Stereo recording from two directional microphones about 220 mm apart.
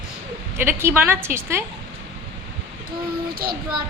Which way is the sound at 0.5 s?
10° right (ahead or behind).